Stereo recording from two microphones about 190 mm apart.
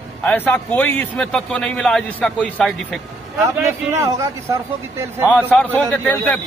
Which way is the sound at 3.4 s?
15° right (ahead or behind).